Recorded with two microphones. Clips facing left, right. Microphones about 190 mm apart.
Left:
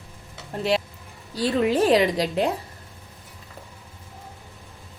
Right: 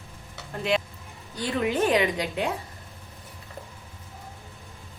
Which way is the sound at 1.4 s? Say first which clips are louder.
Left 5 dB; 30° left (ahead or behind).